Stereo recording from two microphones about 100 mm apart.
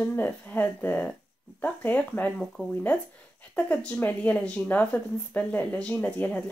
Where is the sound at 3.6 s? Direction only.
15° left (ahead or behind).